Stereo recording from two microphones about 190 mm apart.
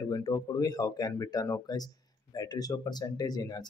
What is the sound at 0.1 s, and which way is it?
Speech, 20° left (ahead or behind).